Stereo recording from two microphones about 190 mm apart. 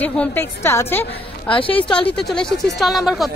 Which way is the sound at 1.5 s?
30° left (ahead or behind).